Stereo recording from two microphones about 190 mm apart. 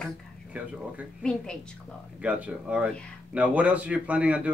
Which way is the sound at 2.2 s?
5° right (ahead or behind).